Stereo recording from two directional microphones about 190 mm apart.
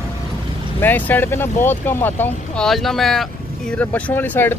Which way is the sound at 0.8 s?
10° left (ahead or behind).